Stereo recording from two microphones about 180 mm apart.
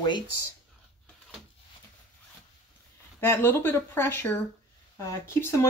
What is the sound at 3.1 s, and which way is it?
Speech, 10° left (ahead or behind).